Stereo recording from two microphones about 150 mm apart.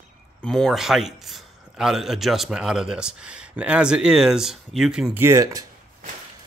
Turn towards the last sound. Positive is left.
turn(degrees=-20)  # may be behind; listen again after turning